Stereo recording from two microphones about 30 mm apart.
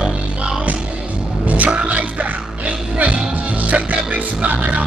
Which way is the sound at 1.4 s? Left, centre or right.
Right.